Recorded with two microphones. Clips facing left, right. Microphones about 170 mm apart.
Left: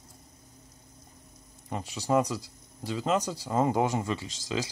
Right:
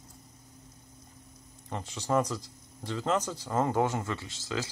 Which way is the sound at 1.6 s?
10° left (ahead or behind).